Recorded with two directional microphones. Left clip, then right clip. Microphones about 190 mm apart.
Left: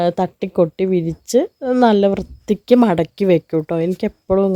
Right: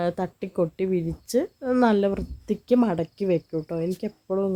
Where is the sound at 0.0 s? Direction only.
30° left (ahead or behind).